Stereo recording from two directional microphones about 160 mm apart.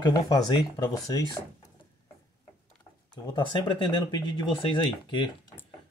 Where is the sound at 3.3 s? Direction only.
30° left (ahead or behind).